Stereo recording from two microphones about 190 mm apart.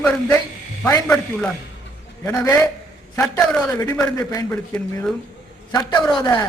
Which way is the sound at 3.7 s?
15° left (ahead or behind).